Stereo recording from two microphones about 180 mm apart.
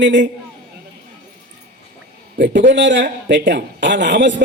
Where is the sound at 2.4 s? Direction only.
75° right (ahead or behind).